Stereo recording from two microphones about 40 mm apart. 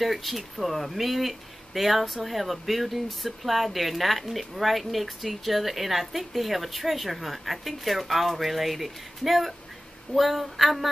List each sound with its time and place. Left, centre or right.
0.0 s speech: centre